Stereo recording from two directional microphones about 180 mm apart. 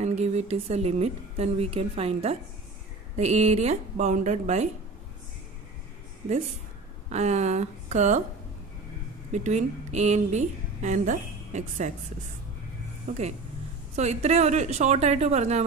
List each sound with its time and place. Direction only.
0.0 s a woman's voice: 40° right (ahead or behind)
7.1 s a woman's voice: 40° right (ahead or behind)
9.3 s a woman's voice: 40° right (ahead or behind)
13.1 s a woman's voice: 40° right (ahead or behind)